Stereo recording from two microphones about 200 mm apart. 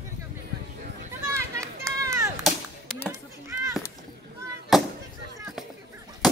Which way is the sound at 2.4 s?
Centre (ahead or behind).